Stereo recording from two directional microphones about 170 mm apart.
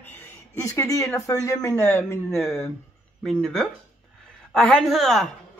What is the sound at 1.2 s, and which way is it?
Speech, 20° left (ahead or behind).